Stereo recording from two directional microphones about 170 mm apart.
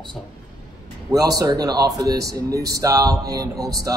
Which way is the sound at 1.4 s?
20° right (ahead or behind).